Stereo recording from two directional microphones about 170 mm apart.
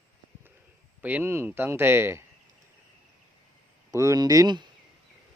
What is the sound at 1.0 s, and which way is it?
Speech, 10° right (ahead or behind).